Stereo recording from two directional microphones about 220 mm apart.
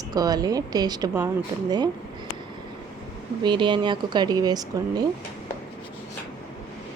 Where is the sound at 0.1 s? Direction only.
15° right (ahead or behind).